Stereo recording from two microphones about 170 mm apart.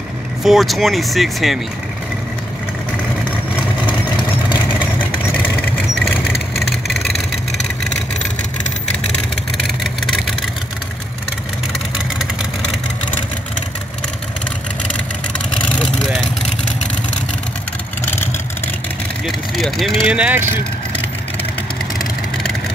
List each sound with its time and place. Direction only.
0.4 s speech: centre (ahead or behind)
5.4 s vehicle: 10° left (ahead or behind)
6.5 s vehicle: centre (ahead or behind)
15.7 s vehicle: 5° left (ahead or behind)
19.2 s vehicle: centre (ahead or behind)
20.1 s speech: 10° right (ahead or behind)